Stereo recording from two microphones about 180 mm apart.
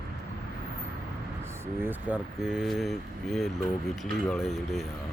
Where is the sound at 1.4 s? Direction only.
15° right (ahead or behind).